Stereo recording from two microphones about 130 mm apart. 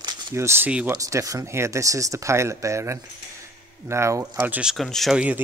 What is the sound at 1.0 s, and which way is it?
Speech, 25° right (ahead or behind).